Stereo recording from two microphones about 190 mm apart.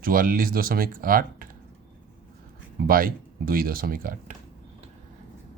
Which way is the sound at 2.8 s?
50° right (ahead or behind).